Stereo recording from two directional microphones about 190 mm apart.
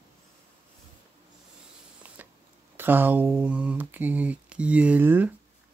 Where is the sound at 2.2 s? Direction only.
10° right (ahead or behind).